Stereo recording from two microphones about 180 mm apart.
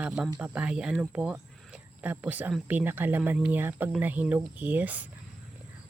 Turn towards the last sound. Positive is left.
turn(degrees=-10)  # may be behind; listen again after turning